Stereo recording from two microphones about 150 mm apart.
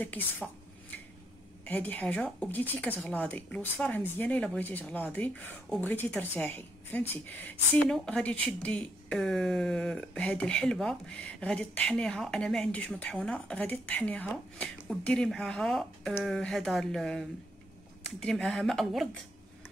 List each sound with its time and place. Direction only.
0.0 s speech: 10° left (ahead or behind)
1.6 s speech: 10° left (ahead or behind)